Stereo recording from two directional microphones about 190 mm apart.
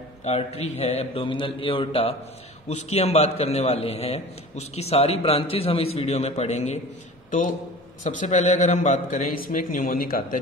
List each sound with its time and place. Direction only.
0.2 s a man's voice: 35° left (ahead or behind)